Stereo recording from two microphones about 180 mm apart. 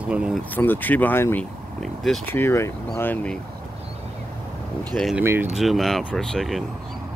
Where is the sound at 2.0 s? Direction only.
Centre (ahead or behind).